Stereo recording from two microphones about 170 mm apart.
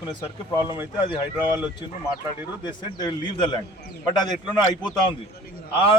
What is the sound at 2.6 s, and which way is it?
Speech, 25° left (ahead or behind).